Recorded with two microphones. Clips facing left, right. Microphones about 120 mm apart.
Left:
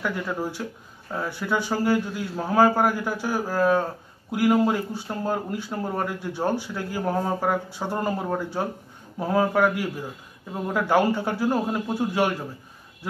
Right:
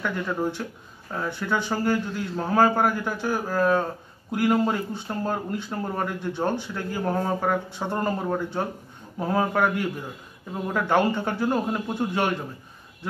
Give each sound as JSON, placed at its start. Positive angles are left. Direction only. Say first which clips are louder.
{"t": 0.0, "sound": "speech", "louder": "right 1 dB", "side_deg": 5}